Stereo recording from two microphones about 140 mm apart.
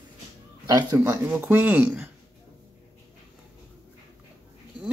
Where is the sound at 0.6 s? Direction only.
25° right (ahead or behind).